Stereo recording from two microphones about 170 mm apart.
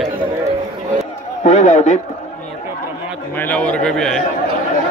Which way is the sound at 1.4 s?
45° left (ahead or behind).